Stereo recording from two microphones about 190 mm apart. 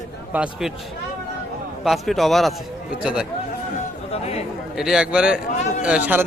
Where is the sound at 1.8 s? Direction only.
Centre (ahead or behind).